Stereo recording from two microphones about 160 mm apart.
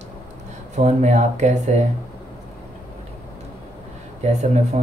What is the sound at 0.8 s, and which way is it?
Speech, 45° right (ahead or behind).